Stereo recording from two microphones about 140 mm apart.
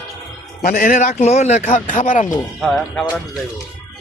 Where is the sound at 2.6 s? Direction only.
Centre (ahead or behind).